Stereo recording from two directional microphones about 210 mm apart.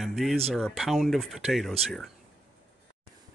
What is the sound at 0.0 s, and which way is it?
Speech, centre (ahead or behind).